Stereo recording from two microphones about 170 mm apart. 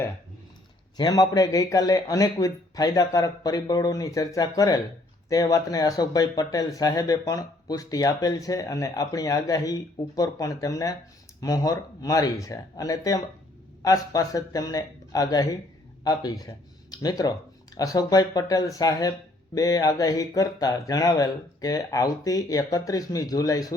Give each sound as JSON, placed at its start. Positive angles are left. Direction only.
{"t": 0.9, "sound": "speech", "side_deg": 20}